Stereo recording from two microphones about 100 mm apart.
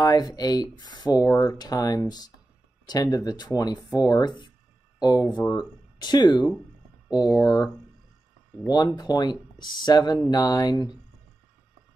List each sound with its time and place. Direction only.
0.0 s speech: 45° left (ahead or behind)
7.2 s speech: 35° left (ahead or behind)